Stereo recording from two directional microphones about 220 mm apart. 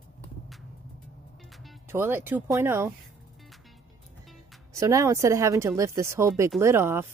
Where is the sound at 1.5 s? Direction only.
Centre (ahead or behind).